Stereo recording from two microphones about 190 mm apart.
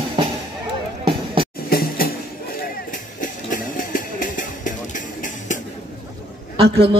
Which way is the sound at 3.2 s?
45° left (ahead or behind).